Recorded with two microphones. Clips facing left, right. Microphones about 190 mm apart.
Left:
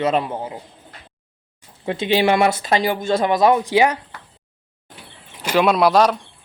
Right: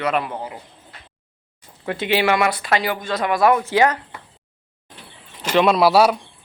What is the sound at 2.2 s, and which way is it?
A man's voice, 30° left (ahead or behind).